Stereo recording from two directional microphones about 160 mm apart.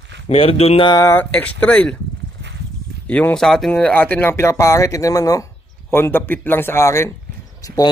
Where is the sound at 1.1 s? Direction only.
10° left (ahead or behind).